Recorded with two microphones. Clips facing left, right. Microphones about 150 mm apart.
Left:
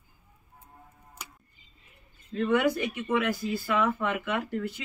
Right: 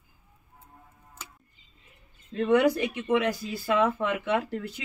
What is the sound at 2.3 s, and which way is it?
Speech, 35° right (ahead or behind).